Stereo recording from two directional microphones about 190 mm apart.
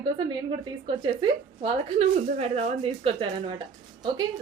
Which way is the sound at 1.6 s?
35° right (ahead or behind).